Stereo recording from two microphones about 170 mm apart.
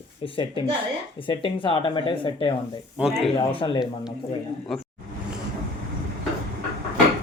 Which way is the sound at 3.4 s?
30° left (ahead or behind).